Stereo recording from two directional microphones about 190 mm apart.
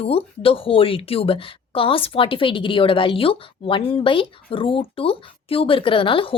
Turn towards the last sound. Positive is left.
turn(degrees=30)  # may be behind; listen again after turning